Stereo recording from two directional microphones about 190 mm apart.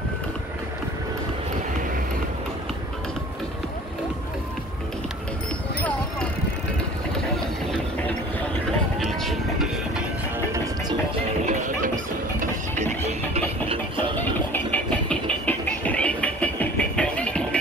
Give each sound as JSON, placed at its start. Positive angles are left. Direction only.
{"t": 8.6, "sound": "music", "side_deg": 0}
{"t": 11.4, "sound": "music", "side_deg": -40}
{"t": 14.1, "sound": "vehicle", "side_deg": 10}